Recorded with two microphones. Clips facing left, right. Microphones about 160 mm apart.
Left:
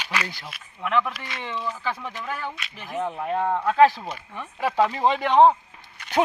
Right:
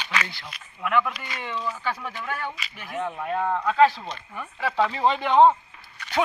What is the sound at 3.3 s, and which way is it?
Speech, 25° left (ahead or behind).